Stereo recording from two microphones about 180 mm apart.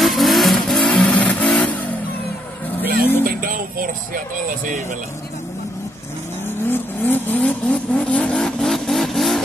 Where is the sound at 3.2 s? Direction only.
55° right (ahead or behind).